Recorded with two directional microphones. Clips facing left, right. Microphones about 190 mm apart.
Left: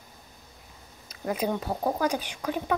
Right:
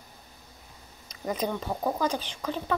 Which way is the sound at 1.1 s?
5° left (ahead or behind).